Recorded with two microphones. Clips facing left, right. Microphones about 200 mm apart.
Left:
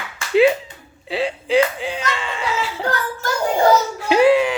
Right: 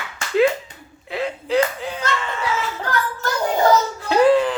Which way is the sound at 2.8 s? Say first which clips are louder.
Left 1 dB; 25° left (ahead or behind).